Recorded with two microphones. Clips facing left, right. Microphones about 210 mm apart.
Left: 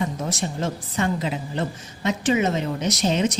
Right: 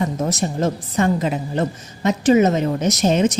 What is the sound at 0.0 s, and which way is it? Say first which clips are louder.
A woman's voice: right 5 dB; 40° right (ahead or behind).